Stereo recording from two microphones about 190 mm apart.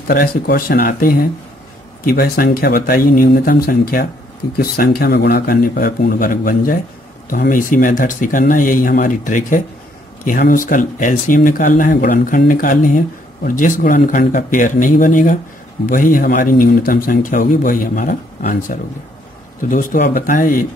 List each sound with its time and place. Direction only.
0.0 s speech: 50° left (ahead or behind)